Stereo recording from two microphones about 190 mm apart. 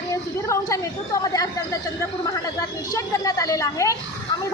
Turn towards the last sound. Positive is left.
turn(degrees=15)  # may be behind; listen again after turning